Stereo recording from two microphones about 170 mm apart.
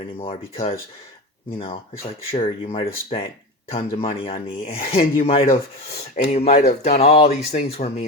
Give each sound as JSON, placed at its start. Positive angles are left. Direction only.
{"t": 0.2, "sound": "speech", "side_deg": 35}
{"t": 2.3, "sound": "speech", "side_deg": 35}